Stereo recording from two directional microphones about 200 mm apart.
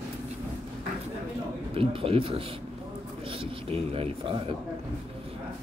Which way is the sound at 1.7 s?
30° right (ahead or behind).